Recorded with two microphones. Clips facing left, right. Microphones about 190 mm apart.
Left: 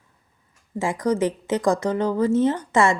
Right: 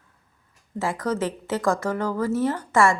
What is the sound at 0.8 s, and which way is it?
A woman's voice, 15° left (ahead or behind).